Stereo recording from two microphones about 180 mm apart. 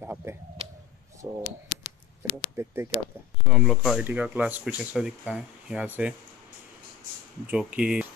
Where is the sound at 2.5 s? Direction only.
15° right (ahead or behind).